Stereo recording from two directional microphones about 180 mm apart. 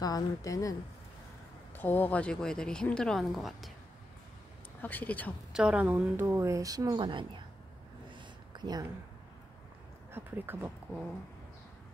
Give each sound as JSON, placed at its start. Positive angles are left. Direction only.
{"t": 0.0, "sound": "a woman's voice", "side_deg": 20}
{"t": 4.8, "sound": "speech", "side_deg": 10}
{"t": 5.5, "sound": "speech", "side_deg": -5}
{"t": 8.1, "sound": "a sound", "side_deg": -25}
{"t": 10.1, "sound": "speech", "side_deg": -10}